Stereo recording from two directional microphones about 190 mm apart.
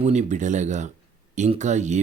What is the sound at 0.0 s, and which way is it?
Speech, 35° right (ahead or behind).